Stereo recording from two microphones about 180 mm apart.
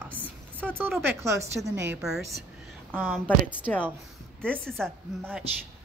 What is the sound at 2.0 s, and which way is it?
Speech, centre (ahead or behind).